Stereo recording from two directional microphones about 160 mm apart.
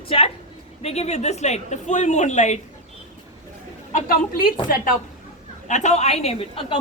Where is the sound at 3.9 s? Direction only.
65° left (ahead or behind).